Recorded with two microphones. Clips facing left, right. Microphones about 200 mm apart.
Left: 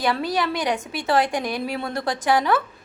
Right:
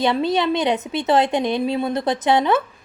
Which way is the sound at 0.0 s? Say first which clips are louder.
Right 4 dB; 25° right (ahead or behind).